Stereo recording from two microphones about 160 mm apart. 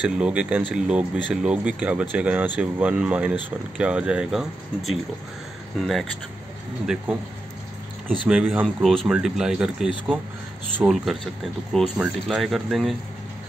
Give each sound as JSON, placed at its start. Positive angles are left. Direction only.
{"t": 0.2, "sound": "speech", "side_deg": -5}
{"t": 8.3, "sound": "speech", "side_deg": -5}